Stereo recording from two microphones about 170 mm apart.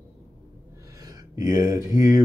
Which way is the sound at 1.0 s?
20° right (ahead or behind).